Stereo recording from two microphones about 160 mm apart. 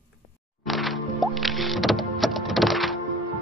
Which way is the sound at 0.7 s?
Centre (ahead or behind).